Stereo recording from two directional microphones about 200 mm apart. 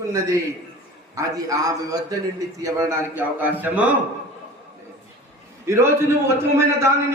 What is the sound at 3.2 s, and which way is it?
Speech, 10° right (ahead or behind).